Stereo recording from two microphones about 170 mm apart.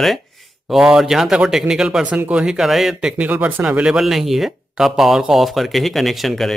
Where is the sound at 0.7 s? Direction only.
5° right (ahead or behind).